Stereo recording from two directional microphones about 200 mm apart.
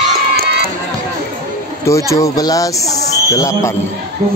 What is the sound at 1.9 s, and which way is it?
Speech, 15° left (ahead or behind).